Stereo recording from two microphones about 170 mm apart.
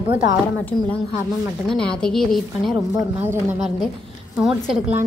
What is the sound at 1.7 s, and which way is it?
A woman's voice, 5° left (ahead or behind).